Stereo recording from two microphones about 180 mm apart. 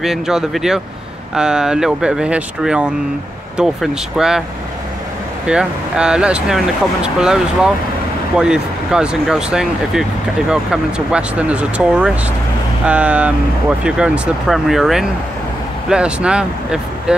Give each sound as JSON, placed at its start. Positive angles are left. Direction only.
{"t": 0.0, "sound": "speech", "side_deg": 0}
{"t": 5.5, "sound": "speech", "side_deg": -5}